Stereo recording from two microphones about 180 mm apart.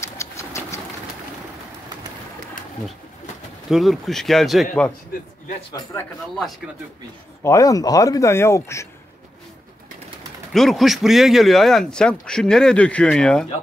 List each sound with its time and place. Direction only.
0.0 s bird: 15° left (ahead or behind)
3.7 s speech: centre (ahead or behind)
5.9 s speech: 5° left (ahead or behind)
7.4 s speech: 20° left (ahead or behind)
10.5 s speech: centre (ahead or behind)